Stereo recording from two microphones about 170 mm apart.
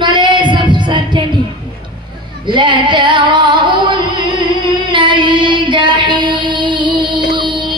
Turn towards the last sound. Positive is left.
turn(degrees=-30)  # may be behind; listen again after turning